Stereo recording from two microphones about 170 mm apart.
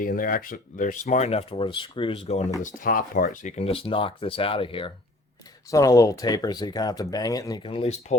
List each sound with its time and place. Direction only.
0.0 s speech: 55° left (ahead or behind); by 2.4 s 35° left (ahead or behind)
2.6 s speech: 50° left (ahead or behind); by 4.9 s 30° left (ahead or behind)
5.7 s speech: 20° left (ahead or behind)